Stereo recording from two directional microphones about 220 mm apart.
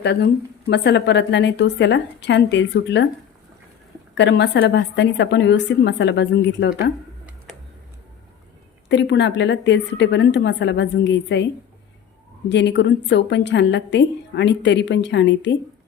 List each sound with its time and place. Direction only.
0.0 s a woman's voice: 50° left (ahead or behind)
4.2 s a woman's voice: 50° left (ahead or behind)
8.9 s a woman's voice: 55° left (ahead or behind)
12.5 s a woman's voice: 50° left (ahead or behind)